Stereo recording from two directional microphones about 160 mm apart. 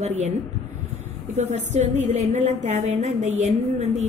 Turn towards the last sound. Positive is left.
turn(degrees=-45)  # may be behind; listen again after turning